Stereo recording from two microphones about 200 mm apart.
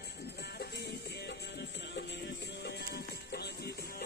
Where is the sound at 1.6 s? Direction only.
55° left (ahead or behind).